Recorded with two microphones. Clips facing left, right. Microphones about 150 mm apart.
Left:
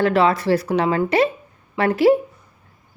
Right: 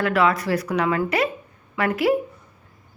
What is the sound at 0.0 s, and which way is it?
A woman's voice, 30° left (ahead or behind).